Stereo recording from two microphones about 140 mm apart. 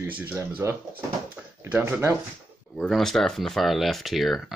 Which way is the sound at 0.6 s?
20° right (ahead or behind).